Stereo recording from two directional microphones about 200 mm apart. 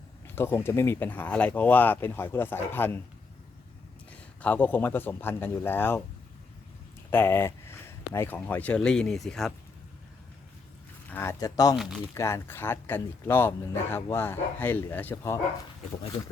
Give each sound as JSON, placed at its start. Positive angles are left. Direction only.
{"t": 0.3, "sound": "speech", "side_deg": 10}
{"t": 4.1, "sound": "speech", "side_deg": 10}
{"t": 7.1, "sound": "speech", "side_deg": 10}
{"t": 11.1, "sound": "speech", "side_deg": 10}